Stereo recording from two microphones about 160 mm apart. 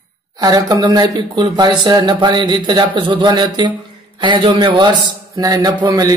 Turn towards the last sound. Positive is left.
turn(degrees=-20)  # may be behind; listen again after turning